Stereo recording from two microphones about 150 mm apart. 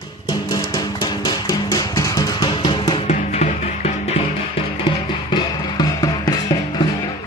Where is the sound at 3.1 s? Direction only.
55° left (ahead or behind); by 6.8 s 25° left (ahead or behind).